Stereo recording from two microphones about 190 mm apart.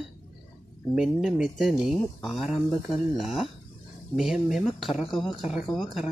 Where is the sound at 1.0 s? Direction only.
5° right (ahead or behind).